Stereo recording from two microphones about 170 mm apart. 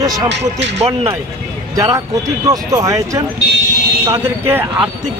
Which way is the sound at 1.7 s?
20° right (ahead or behind).